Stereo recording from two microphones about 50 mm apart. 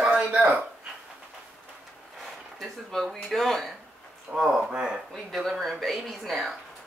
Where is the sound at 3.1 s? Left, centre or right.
Centre.